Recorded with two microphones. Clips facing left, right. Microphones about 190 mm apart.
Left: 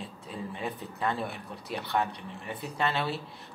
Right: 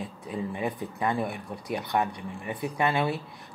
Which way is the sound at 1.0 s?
15° right (ahead or behind).